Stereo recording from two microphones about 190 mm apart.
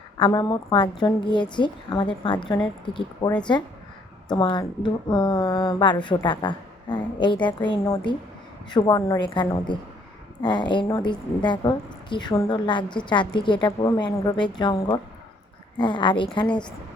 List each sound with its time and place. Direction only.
0.2 s a woman's voice: 20° left (ahead or behind)